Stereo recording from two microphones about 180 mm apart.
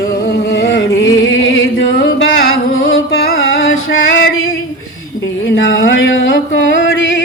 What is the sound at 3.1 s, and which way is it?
Music, 90° left.